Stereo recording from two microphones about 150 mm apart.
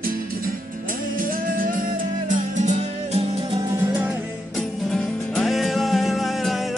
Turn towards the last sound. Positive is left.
turn(degrees=0)  # may be behind; listen again after turning